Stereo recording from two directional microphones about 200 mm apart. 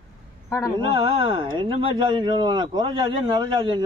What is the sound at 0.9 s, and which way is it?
Speech, 25° right (ahead or behind).